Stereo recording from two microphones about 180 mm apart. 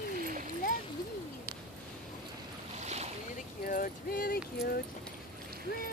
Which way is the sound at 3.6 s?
50° left (ahead or behind).